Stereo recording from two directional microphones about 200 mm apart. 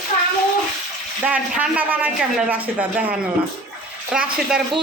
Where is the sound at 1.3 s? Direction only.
5° right (ahead or behind).